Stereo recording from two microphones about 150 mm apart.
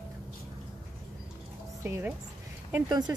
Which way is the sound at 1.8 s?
15° right (ahead or behind).